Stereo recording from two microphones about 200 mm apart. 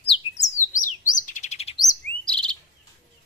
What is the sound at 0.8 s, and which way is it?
Chirp, 40° left (ahead or behind).